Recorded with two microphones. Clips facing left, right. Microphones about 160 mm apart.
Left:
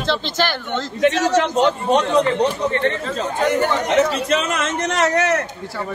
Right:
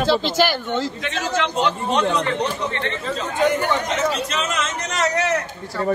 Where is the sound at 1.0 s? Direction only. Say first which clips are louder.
Left 7 dB; 40° left (ahead or behind).